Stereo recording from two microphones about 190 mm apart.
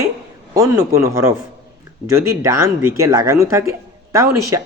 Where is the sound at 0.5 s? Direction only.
15° right (ahead or behind).